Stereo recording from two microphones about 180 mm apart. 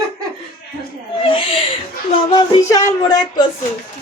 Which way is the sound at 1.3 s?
30° left (ahead or behind).